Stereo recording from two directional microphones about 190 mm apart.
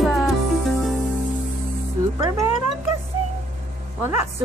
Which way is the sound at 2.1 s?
20° right (ahead or behind).